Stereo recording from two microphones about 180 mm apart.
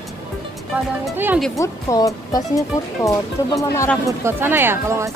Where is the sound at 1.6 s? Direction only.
20° left (ahead or behind).